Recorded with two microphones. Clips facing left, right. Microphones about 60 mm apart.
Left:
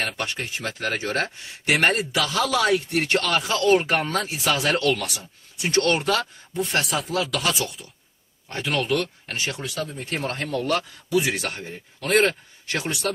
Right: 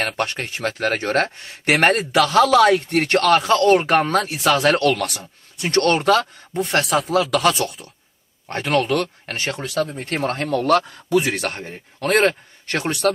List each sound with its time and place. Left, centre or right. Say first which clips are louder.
0.0 s speech: right 5 dB; right